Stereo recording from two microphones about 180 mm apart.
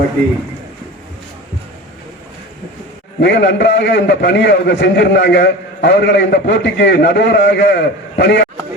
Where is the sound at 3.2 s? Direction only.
75° left (ahead or behind).